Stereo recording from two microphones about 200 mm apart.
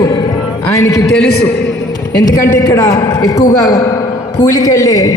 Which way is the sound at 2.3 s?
15° left (ahead or behind).